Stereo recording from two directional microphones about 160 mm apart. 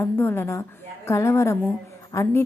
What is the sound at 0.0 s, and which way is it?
A woman's voice, 15° left (ahead or behind).